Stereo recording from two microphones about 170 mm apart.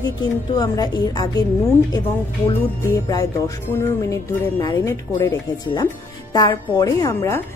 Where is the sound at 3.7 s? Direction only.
15° left (ahead or behind).